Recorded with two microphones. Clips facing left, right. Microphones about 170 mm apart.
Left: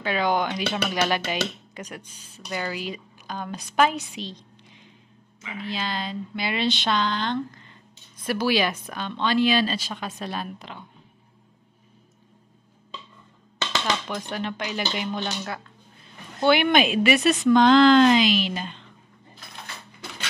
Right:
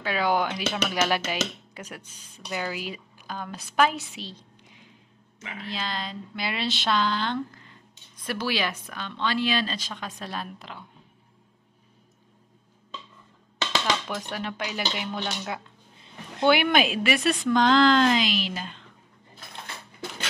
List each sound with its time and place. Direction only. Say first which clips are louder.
0.0 s speech: left 1 dB; 5° right (ahead or behind)
2.0 s a woman's voice: left 3 dB; 10° left (ahead or behind)
2.4 s a woman's voice: left 1 dB; 10° right (ahead or behind)
4.1 s a sound: left 4 dB; 5° right (ahead or behind)
5.6 s speech: left 3 dB; centre (ahead or behind)
8.3 s a woman's voice: left 5 dB; 10° left (ahead or behind)
13.7 s speech: even; 5° right (ahead or behind)
15.4 s speech: even; 20° right (ahead or behind)
16.4 s speech: left 2 dB; 5° right (ahead or behind)